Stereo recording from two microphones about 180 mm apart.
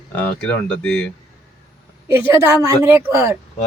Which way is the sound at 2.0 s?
15° right (ahead or behind).